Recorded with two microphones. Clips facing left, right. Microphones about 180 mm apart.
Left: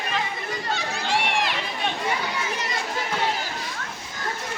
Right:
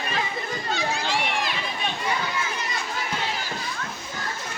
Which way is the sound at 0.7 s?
60° left (ahead or behind).